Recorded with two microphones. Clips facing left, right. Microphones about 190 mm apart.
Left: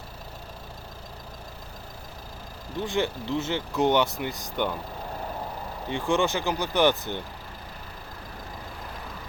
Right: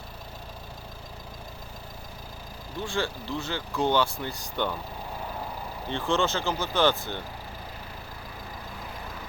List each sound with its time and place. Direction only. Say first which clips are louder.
2.8 s speech: left 3 dB; 20° left (ahead or behind)
5.9 s speech: left 2 dB; 15° left (ahead or behind)